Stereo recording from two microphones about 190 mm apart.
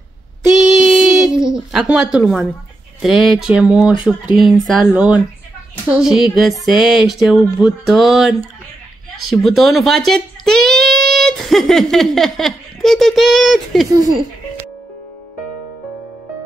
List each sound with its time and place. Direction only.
0.7 s child singing: 5° right (ahead or behind)
1.5 s speech: centre (ahead or behind)